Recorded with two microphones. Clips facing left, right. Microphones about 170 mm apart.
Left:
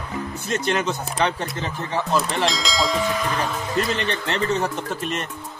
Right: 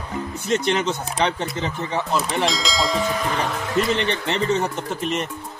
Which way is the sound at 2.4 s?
Centre (ahead or behind).